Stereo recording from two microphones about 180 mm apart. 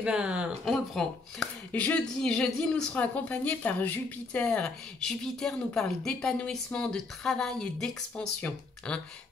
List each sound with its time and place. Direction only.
0.0 s speech: 5° right (ahead or behind)
0.9 s speech: 5° left (ahead or behind)